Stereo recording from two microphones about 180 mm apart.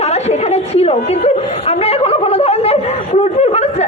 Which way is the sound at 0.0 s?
35° left (ahead or behind).